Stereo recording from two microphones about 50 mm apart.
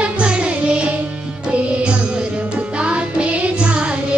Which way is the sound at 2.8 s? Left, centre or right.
Right.